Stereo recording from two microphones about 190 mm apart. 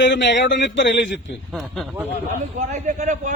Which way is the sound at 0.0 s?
70° left (ahead or behind).